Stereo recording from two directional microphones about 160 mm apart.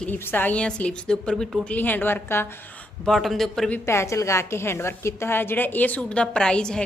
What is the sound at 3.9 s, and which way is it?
A woman's voice, 15° left (ahead or behind).